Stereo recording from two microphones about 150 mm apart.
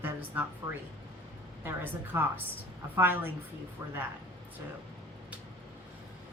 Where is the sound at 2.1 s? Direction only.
15° right (ahead or behind).